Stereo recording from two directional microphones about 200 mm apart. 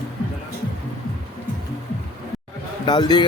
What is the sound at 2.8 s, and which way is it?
Speech, 20° left (ahead or behind).